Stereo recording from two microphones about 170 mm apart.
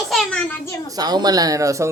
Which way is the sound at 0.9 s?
25° right (ahead or behind).